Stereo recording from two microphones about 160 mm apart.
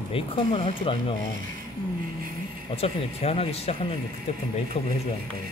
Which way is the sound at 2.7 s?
40° left (ahead or behind).